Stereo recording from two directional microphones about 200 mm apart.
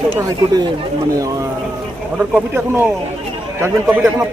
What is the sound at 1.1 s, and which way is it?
Speech, 15° right (ahead or behind).